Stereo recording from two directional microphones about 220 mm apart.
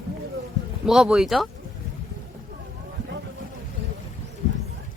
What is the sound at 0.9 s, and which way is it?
Speech, centre (ahead or behind).